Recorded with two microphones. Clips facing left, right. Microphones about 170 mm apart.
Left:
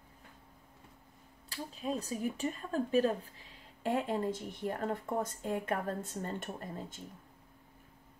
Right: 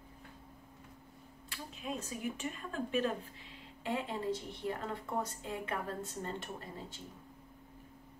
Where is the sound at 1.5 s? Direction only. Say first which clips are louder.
Left 5 dB; 35° left (ahead or behind).